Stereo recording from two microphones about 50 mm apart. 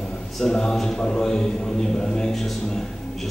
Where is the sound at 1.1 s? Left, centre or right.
Centre.